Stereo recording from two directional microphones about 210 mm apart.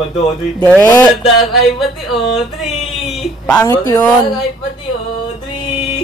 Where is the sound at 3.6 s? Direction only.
15° left (ahead or behind).